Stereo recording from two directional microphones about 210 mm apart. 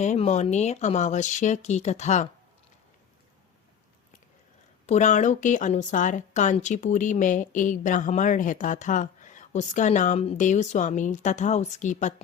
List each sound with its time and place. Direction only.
0.0 s a woman's voice: 30° left (ahead or behind)
4.9 s a woman's voice: 35° left (ahead or behind)